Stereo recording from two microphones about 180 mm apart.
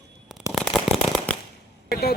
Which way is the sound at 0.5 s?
Centre (ahead or behind).